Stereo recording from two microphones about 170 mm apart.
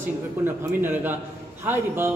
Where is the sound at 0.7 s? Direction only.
10° right (ahead or behind).